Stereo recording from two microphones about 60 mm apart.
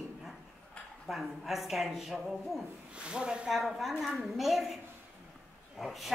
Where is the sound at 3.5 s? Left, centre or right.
Centre.